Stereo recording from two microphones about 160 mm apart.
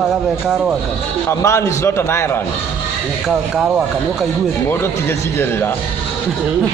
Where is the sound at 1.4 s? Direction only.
20° left (ahead or behind).